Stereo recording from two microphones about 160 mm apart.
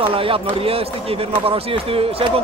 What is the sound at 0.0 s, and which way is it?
Speech, 35° right (ahead or behind).